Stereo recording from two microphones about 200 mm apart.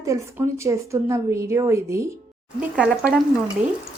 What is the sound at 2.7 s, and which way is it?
Speech, 5° right (ahead or behind).